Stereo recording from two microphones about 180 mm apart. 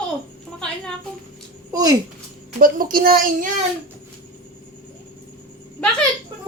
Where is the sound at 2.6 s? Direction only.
50° right (ahead or behind).